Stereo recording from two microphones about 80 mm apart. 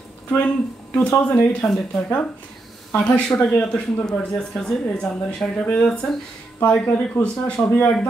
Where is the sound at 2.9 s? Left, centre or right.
Centre.